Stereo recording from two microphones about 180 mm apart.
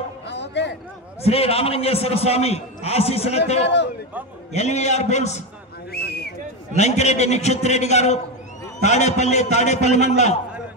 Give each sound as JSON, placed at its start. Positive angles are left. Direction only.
{"t": 0.3, "sound": "a sound", "side_deg": 75}
{"t": 1.2, "sound": "a man's voice", "side_deg": 35}
{"t": 3.6, "sound": "a man's voice", "side_deg": 75}
{"t": 4.5, "sound": "a man's voice", "side_deg": 40}
{"t": 5.9, "sound": "a sound", "side_deg": 60}
{"t": 6.8, "sound": "a man's voice", "side_deg": 40}